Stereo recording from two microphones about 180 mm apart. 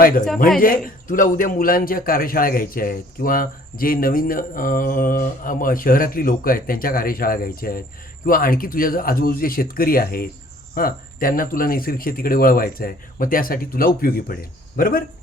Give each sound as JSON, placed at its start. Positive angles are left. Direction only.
{"t": 0.6, "sound": "a man's voice", "side_deg": 50}